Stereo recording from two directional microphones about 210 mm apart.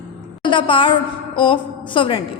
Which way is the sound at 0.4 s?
25° left (ahead or behind).